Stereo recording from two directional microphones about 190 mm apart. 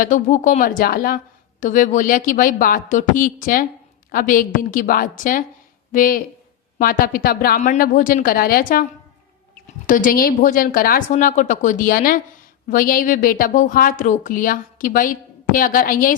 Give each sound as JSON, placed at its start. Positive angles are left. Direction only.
{"t": 0.0, "sound": "a woman's voice", "side_deg": 40}